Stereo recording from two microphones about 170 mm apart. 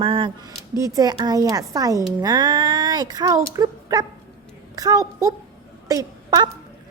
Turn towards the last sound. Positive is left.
turn(degrees=-25)  # may be behind; listen again after turning